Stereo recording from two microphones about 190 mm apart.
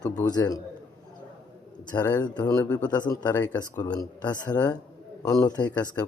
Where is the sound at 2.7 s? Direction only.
10° left (ahead or behind).